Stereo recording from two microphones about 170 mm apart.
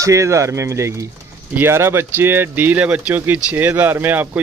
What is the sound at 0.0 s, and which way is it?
Speech, 20° right (ahead or behind).